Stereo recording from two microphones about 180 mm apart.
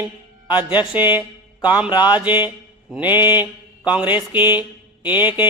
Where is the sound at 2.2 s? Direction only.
10° right (ahead or behind).